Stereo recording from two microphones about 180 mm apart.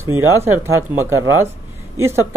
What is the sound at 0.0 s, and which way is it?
Speech, 15° right (ahead or behind).